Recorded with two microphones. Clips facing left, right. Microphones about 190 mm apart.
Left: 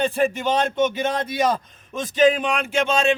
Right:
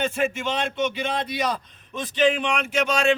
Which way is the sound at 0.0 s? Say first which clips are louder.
Left 4 dB; 35° left (ahead or behind).